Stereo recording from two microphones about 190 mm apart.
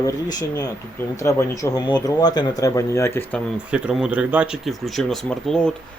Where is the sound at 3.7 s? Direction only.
5° right (ahead or behind).